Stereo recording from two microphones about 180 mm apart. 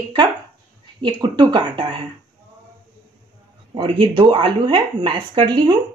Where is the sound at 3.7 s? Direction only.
25° right (ahead or behind).